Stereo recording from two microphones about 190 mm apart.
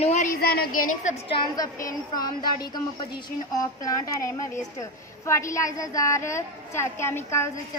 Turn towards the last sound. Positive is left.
turn(degrees=15)  # may be behind; listen again after turning